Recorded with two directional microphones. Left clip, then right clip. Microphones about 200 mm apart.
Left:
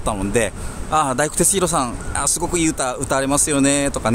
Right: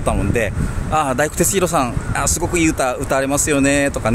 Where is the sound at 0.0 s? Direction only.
20° left (ahead or behind).